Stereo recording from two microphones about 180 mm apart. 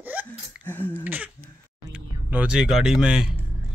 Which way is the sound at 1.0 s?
10° right (ahead or behind).